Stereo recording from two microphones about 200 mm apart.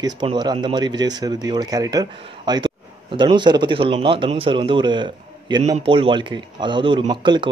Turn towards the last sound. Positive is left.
turn(degrees=-25)  # may be behind; listen again after turning